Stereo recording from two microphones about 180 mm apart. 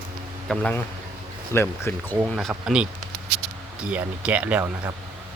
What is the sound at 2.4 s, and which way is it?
Speech, centre (ahead or behind).